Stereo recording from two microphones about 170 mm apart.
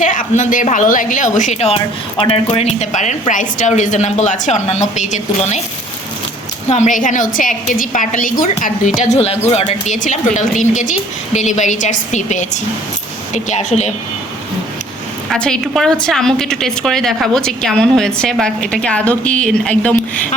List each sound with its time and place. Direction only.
0.0 s a woman's voice: 50° left (ahead or behind)
6.7 s a woman's voice: 45° left (ahead or behind)
9.0 s a woman's voice: 40° left (ahead or behind)
15.3 s a woman's voice: 5° left (ahead or behind)